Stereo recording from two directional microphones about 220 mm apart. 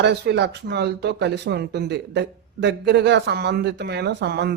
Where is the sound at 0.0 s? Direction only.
50° right (ahead or behind).